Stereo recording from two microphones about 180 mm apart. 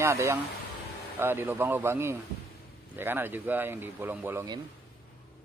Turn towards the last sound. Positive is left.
turn(degrees=-15)  # may be behind; listen again after turning